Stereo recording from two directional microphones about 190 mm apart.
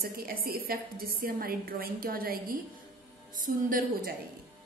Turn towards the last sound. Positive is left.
turn(degrees=-45)  # may be behind; listen again after turning